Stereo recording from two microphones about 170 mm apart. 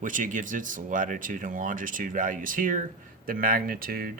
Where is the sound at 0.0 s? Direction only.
50° right (ahead or behind).